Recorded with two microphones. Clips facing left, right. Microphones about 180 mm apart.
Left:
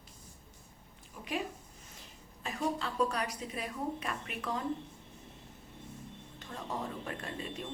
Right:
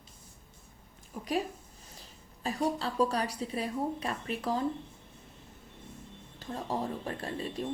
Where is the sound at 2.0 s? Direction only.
35° right (ahead or behind).